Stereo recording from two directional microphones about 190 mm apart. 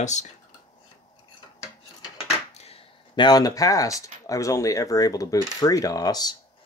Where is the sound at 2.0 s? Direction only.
30° left (ahead or behind).